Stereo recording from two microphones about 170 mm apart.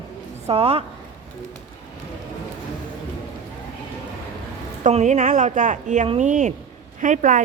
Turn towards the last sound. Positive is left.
turn(degrees=-45)  # may be behind; listen again after turning